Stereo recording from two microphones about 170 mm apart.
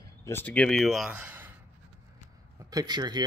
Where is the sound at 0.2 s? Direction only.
10° left (ahead or behind); by 1.5 s 10° right (ahead or behind).